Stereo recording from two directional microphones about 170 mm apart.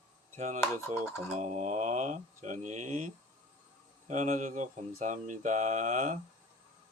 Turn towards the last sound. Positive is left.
turn(degrees=-45)  # may be behind; listen again after turning